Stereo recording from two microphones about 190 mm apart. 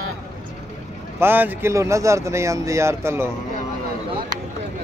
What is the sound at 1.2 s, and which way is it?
Speech, 10° right (ahead or behind).